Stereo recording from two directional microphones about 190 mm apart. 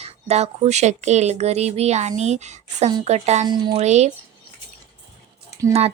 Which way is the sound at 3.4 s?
25° right (ahead or behind).